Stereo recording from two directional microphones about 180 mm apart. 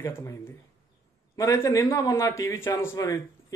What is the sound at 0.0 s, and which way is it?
A man's voice, 15° left (ahead or behind).